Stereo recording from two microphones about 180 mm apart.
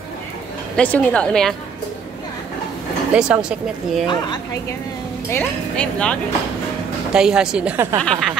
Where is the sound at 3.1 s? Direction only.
5° right (ahead or behind).